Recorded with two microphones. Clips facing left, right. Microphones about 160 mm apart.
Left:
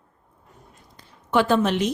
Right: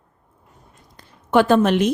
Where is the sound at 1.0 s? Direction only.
50° right (ahead or behind).